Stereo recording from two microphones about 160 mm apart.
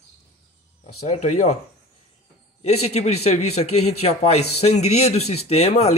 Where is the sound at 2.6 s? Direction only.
40° left (ahead or behind).